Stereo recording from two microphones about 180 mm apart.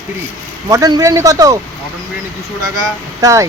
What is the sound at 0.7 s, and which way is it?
Speech, 20° right (ahead or behind).